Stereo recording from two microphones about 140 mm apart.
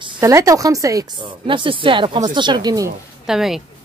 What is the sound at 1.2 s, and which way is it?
Speech, 35° right (ahead or behind).